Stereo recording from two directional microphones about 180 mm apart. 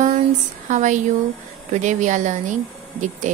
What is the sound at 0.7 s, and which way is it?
Speech, 45° right (ahead or behind).